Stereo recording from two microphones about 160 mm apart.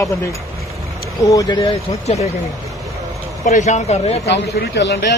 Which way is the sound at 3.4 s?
45° left (ahead or behind).